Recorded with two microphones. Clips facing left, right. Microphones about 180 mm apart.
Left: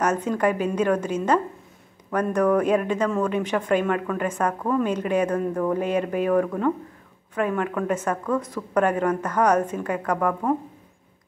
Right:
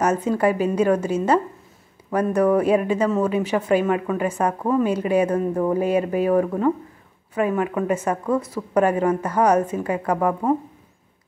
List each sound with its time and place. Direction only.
0.0 s speech: 10° right (ahead or behind)